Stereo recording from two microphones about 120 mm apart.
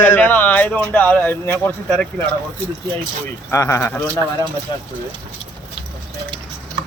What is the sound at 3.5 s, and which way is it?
Speech, 25° left (ahead or behind).